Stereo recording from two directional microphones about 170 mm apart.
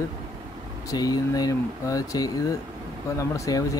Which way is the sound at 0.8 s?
20° left (ahead or behind).